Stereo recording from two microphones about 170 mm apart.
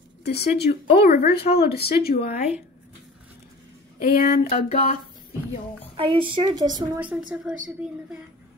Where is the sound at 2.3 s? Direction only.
40° left (ahead or behind).